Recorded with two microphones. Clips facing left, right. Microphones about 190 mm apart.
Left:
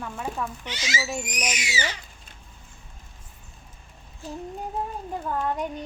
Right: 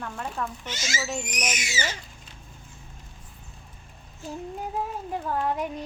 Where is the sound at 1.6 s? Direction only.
45° right (ahead or behind).